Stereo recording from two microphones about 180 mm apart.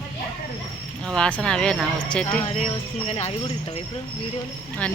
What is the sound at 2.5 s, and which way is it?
Speech, 35° left (ahead or behind).